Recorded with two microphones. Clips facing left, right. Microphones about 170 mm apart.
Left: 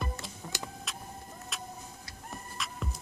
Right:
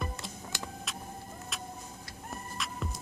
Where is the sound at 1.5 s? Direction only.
Centre (ahead or behind).